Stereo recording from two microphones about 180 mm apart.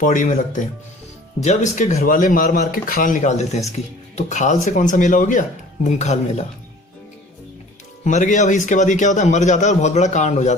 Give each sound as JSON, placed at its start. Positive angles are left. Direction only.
{"t": 0.0, "sound": "a man's voice", "side_deg": 45}
{"t": 8.0, "sound": "a man's voice", "side_deg": 45}